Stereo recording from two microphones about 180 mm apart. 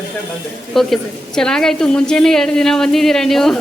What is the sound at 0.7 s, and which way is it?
A woman's voice, centre (ahead or behind).